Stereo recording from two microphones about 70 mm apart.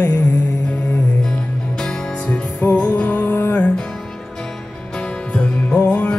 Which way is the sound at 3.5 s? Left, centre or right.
Centre.